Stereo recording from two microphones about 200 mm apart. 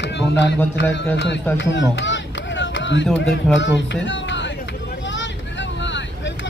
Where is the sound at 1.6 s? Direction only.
65° left (ahead or behind).